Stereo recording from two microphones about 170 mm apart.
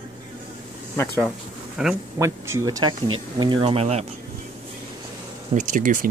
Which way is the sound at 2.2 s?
15° right (ahead or behind).